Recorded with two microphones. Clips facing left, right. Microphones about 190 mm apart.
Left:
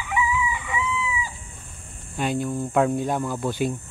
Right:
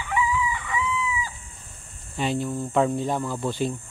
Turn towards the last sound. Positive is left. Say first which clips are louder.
# left 1 dB
turn(degrees=0)  # may be behind; listen again after turning